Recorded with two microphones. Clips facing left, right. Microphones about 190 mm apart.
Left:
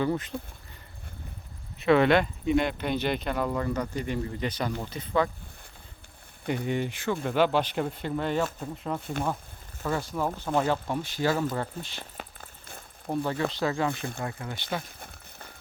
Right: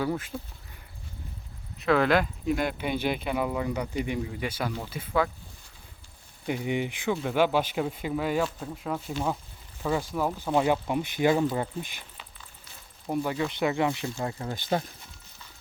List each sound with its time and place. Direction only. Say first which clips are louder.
0.0 s speech: left 2 dB; 5° right (ahead or behind)
1.8 s speech: left 2 dB; centre (ahead or behind)
6.7 s speech: right 2 dB; 15° right (ahead or behind)
9.8 s speech: right 2 dB; 10° right (ahead or behind)
12.1 s a sound: left 7 dB; 50° left (ahead or behind)
13.1 s speech: even; 15° right (ahead or behind)
14.0 s speech: right 2 dB; 55° left (ahead or behind)
14.3 s speech: right 4 dB; 35° right (ahead or behind)
15.0 s a sound: left 5 dB; 55° left (ahead or behind)